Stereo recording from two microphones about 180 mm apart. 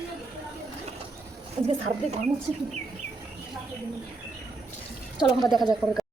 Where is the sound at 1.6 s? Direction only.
40° right (ahead or behind).